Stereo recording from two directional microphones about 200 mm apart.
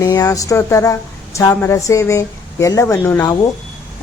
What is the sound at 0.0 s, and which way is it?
Speech, 20° left (ahead or behind).